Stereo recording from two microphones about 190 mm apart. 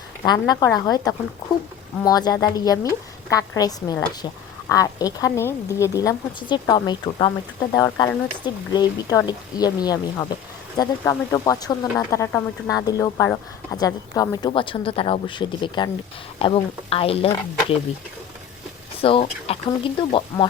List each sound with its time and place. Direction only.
0.3 s speech: 20° left (ahead or behind)
19.0 s speech: 30° left (ahead or behind)